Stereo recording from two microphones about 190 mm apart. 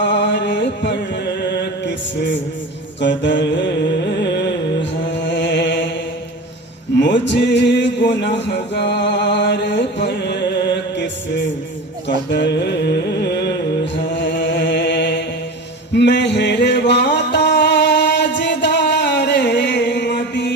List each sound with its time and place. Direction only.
0.0 s chant: 70° left (ahead or behind)
3.0 s music: 70° left (ahead or behind)
7.0 s music: 70° left (ahead or behind)
12.0 s carnatic music: 65° left (ahead or behind)
16.0 s music: 65° left (ahead or behind)